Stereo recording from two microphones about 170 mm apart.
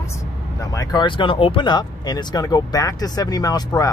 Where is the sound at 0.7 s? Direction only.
25° left (ahead or behind).